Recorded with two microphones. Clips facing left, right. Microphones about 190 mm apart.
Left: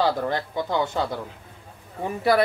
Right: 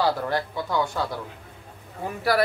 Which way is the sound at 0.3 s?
20° left (ahead or behind).